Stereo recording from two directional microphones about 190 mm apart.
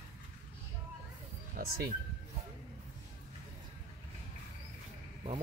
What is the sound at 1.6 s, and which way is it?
Speech, 50° right (ahead or behind).